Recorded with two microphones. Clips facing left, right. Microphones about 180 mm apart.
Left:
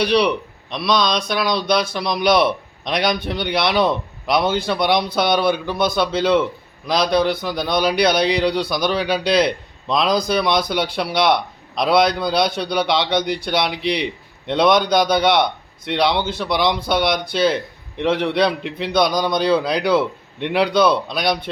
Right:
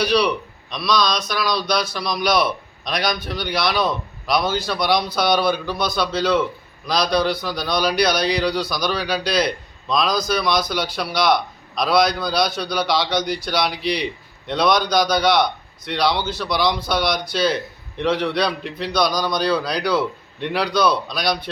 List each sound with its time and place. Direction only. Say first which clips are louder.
0.0 s a man's voice: left 2 dB; 25° left (ahead or behind)
15.1 s a man's voice: left 1 dB; 25° left (ahead or behind)